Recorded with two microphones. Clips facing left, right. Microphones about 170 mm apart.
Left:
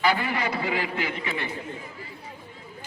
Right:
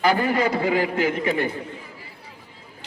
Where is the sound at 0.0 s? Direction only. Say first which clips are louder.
Right 5 dB; 45° right (ahead or behind).